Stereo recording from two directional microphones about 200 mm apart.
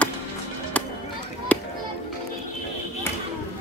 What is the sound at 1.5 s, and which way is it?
Children playing, 5° left (ahead or behind).